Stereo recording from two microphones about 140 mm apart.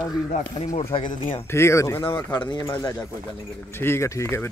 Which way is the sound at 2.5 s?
30° left (ahead or behind).